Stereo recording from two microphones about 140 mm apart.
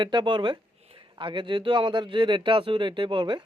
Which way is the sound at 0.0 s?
35° right (ahead or behind).